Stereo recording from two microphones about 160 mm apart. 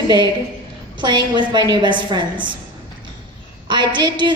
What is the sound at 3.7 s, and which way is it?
Speech, 30° right (ahead or behind).